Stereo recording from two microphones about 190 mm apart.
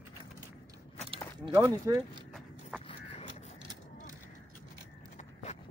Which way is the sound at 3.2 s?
35° left (ahead or behind).